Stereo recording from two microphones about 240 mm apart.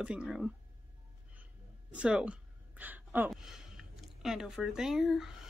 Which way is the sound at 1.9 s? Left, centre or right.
Centre.